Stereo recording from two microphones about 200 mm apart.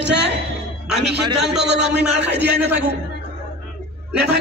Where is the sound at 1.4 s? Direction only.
60° right (ahead or behind).